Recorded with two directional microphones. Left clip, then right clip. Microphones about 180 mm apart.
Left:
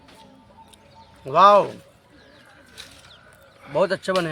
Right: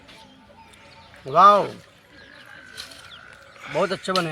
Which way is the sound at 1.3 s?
30° left (ahead or behind).